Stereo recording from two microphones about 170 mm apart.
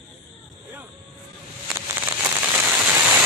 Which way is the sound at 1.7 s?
10° right (ahead or behind).